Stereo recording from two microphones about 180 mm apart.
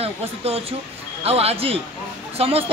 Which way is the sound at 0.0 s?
35° right (ahead or behind).